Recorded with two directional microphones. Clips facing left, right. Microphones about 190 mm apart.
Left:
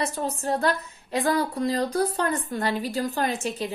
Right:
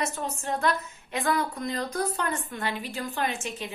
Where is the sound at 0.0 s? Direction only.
35° left (ahead or behind).